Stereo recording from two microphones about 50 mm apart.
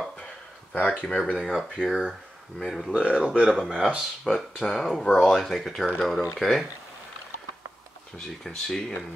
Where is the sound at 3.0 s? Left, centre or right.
Centre.